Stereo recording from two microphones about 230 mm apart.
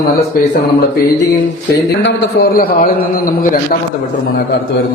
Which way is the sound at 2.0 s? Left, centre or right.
Left.